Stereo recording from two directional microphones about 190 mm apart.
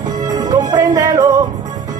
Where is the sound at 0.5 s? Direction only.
20° right (ahead or behind).